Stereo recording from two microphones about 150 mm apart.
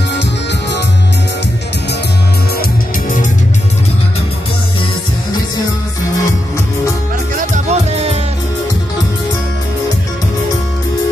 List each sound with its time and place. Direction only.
7.3 s music: 50° right (ahead or behind)